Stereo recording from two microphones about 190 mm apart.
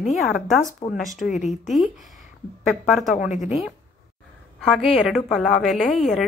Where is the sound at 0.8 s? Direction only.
30° left (ahead or behind).